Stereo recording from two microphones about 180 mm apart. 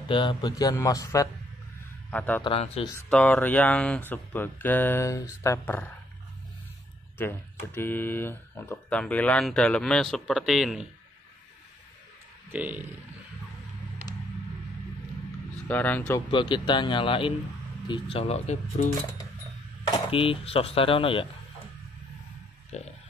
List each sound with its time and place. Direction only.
0.1 s a man's voice: 25° left (ahead or behind); by 2.4 s 10° left (ahead or behind)
2.4 s speech: 35° left (ahead or behind)
3.1 s speech: 10° left (ahead or behind)
7.2 s speech: 10° left (ahead or behind)
12.4 s speech: 10° right (ahead or behind)
15.7 s speech: 10° left (ahead or behind)
16.3 s speech: 25° left (ahead or behind)
19.9 s speech: 30° left (ahead or behind)
22.7 s speech: 35° left (ahead or behind)